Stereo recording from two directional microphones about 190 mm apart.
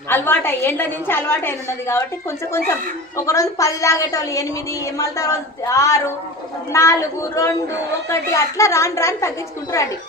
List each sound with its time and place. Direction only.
0.1 s a woman's voice: 10° left (ahead or behind)
3.2 s a woman's voice: 15° left (ahead or behind)